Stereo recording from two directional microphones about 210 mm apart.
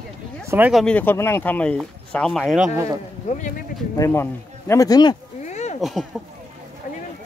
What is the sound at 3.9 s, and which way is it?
Speech, 15° left (ahead or behind).